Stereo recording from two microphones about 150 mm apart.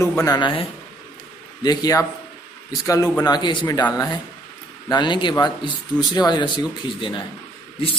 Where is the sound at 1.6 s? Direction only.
25° left (ahead or behind).